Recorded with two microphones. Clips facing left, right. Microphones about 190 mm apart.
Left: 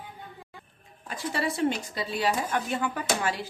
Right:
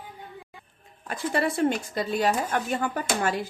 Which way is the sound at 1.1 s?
55° right (ahead or behind).